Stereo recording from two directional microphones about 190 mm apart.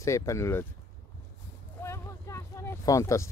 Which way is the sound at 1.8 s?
15° left (ahead or behind).